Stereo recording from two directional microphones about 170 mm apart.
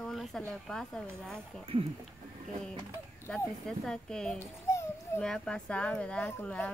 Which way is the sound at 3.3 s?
5° left (ahead or behind).